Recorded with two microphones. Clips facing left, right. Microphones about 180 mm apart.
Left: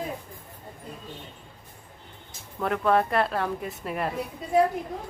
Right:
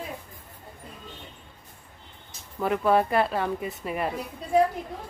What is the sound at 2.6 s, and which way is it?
A woman's voice, 5° right (ahead or behind).